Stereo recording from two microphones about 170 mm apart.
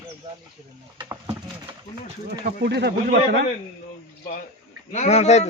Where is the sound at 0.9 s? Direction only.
25° right (ahead or behind).